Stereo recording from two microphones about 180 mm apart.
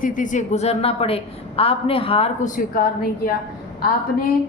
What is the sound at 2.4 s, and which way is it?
Speech, 50° left (ahead or behind).